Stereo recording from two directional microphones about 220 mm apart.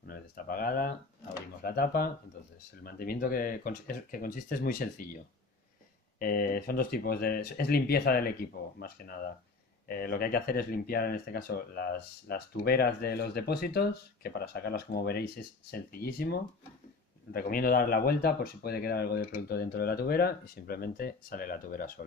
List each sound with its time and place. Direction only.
0.0 s speech: 40° left (ahead or behind)
6.1 s speech: 40° left (ahead or behind)